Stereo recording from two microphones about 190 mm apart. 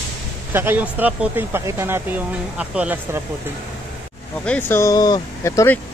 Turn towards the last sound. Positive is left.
turn(degrees=15)  # may be behind; listen again after turning